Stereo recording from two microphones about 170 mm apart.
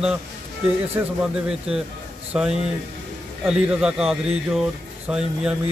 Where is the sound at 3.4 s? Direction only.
5° right (ahead or behind).